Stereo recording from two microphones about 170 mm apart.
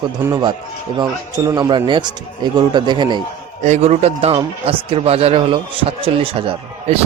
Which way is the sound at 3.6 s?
45° right (ahead or behind).